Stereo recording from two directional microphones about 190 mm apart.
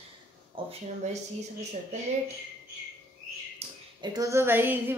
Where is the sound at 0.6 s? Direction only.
25° right (ahead or behind).